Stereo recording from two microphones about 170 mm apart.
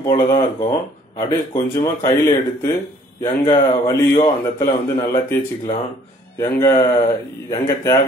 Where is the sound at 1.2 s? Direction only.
20° left (ahead or behind).